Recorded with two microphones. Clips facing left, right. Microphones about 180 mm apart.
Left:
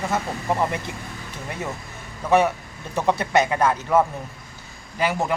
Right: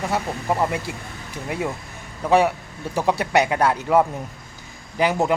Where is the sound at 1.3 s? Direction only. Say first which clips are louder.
Right 5 dB; 10° right (ahead or behind).